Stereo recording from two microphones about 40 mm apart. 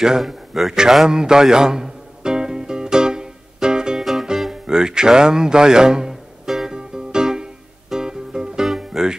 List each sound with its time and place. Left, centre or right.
0.2 s a sound: centre
4.0 s music: centre
4.6 s music: centre